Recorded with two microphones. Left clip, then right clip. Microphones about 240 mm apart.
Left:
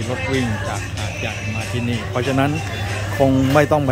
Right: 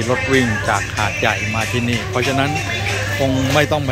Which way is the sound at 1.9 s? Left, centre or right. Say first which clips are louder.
Right 3 dB; centre.